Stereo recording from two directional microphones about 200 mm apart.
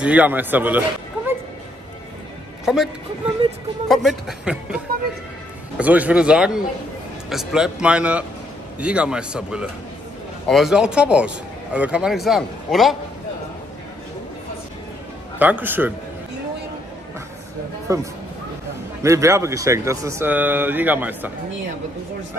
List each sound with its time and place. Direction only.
0.0 s a man's voice: 5° right (ahead or behind)
2.6 s speech: centre (ahead or behind)
3.9 s speech: centre (ahead or behind)
15.3 s speech: 10° right (ahead or behind)
17.9 s speech: 15° right (ahead or behind)